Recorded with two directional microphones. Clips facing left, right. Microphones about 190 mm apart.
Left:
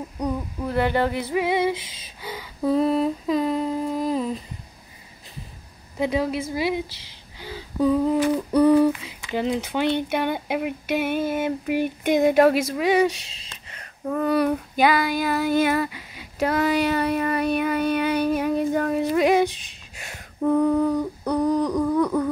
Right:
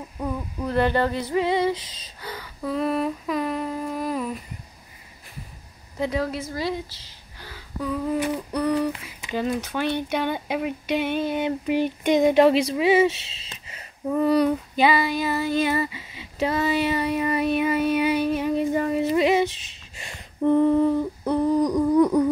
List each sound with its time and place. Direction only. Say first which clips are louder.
0.2 s speech: left 2 dB; 10° left (ahead or behind)
2.2 s a sound: left 1 dB; 15° left (ahead or behind)
2.6 s humming: left 4 dB; 30° left (ahead or behind)
5.9 s speech: left 2 dB; 15° left (ahead or behind)
7.3 s a sound: left 8 dB; 20° left (ahead or behind)
9.3 s speech: left 1 dB; 15° left (ahead or behind)
15.6 s speech: left 2 dB; 60° left (ahead or behind)
15.9 s speech: right 1 dB; centre (ahead or behind)
19.2 s humming: left 2 dB; centre (ahead or behind); by 22.3 s 15° right (ahead or behind)